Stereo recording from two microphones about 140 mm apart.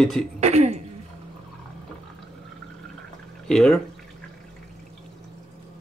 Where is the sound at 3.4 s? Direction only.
5° left (ahead or behind).